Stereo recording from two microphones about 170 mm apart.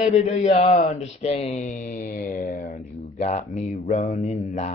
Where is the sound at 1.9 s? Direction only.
60° left (ahead or behind).